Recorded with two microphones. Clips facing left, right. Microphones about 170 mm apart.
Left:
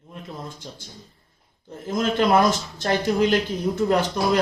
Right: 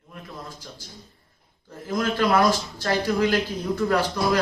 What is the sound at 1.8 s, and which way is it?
Speech, 25° left (ahead or behind).